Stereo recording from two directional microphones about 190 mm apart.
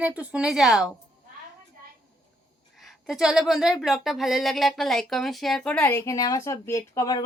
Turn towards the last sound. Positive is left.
turn(degrees=15)  # may be behind; listen again after turning